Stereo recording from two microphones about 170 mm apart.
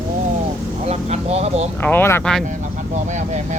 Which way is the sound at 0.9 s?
40° right (ahead or behind).